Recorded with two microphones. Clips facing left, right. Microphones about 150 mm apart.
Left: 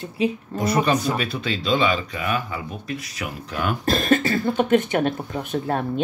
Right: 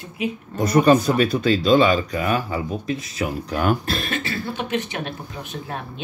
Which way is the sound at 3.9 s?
45° left (ahead or behind).